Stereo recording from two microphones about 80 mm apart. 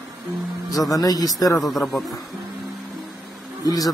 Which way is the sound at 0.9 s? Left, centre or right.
Left.